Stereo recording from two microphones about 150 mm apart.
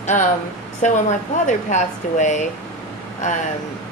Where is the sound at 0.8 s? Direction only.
55° left (ahead or behind).